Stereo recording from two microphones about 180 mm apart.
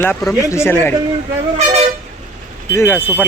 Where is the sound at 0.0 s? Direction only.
10° left (ahead or behind).